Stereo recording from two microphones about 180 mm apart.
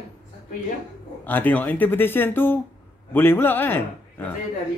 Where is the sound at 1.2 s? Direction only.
10° left (ahead or behind).